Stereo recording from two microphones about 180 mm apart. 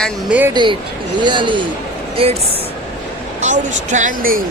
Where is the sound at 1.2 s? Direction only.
25° right (ahead or behind); by 4.5 s 50° right (ahead or behind).